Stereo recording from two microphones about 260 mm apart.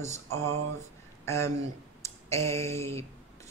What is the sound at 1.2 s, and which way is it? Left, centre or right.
Speech, centre.